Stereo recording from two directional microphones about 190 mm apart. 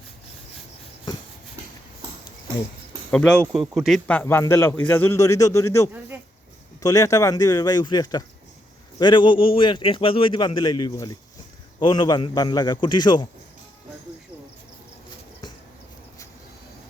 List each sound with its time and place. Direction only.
3.1 s a man's voice: 5° left (ahead or behind); by 13.2 s 25° left (ahead or behind)